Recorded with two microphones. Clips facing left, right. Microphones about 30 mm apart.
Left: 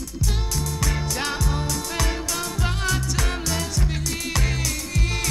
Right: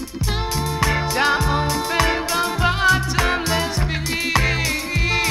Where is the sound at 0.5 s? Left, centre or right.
Right.